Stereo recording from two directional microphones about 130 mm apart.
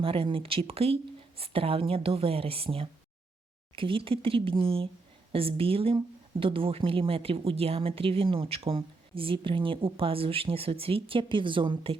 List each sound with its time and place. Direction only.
0.0 s speech: 45° right (ahead or behind)